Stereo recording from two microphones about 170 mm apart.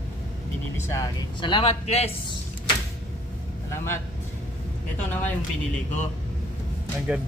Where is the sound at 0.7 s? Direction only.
15° left (ahead or behind); by 2.1 s 35° left (ahead or behind).